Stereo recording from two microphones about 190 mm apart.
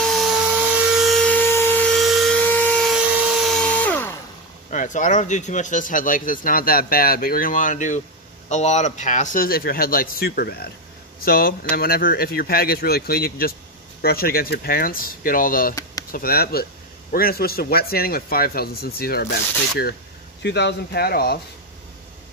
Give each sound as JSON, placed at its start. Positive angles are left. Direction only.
{"t": 0.0, "sound": "a sound", "side_deg": 0}
{"t": 4.6, "sound": "speech", "side_deg": 40}
{"t": 15.7, "sound": "chop", "side_deg": 20}
{"t": 16.1, "sound": "speech", "side_deg": 50}
{"t": 20.4, "sound": "speech", "side_deg": 65}